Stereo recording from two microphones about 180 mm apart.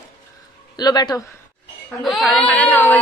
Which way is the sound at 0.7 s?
20° left (ahead or behind).